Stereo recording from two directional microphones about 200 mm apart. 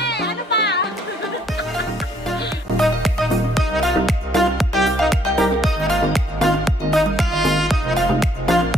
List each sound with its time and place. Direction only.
0.0 s music: 55° left (ahead or behind)
2.8 s music: centre (ahead or behind)